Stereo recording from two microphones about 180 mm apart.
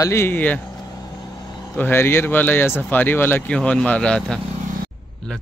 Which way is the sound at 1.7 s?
10° left (ahead or behind).